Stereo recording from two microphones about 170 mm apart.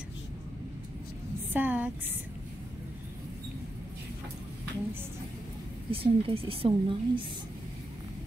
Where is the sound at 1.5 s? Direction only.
10° right (ahead or behind).